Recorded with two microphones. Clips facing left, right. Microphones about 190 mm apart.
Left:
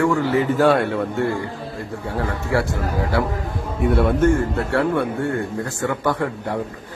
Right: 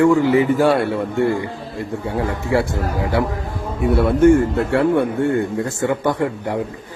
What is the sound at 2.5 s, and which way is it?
Speech, 15° right (ahead or behind).